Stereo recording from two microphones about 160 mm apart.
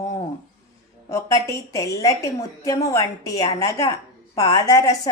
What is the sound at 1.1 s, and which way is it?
Speech, 20° left (ahead or behind).